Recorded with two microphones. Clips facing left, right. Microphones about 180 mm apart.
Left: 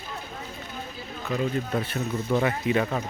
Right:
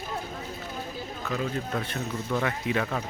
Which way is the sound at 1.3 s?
5° left (ahead or behind).